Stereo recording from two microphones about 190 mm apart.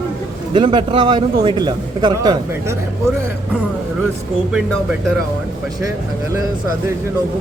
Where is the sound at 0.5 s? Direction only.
25° right (ahead or behind).